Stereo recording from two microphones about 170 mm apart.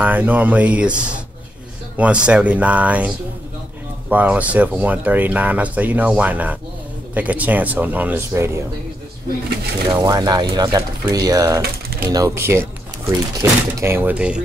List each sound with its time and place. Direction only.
0.0 s speech: 10° right (ahead or behind)
4.1 s speech: 10° right (ahead or behind)
9.9 s speech: 25° right (ahead or behind); by 14.4 s 5° right (ahead or behind)